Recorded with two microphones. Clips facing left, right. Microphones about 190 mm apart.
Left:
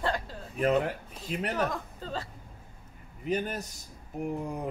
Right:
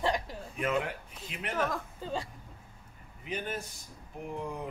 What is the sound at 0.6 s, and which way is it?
Speech, 40° left (ahead or behind).